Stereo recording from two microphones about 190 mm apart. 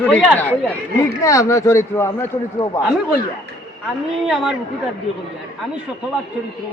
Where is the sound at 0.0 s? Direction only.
5° left (ahead or behind).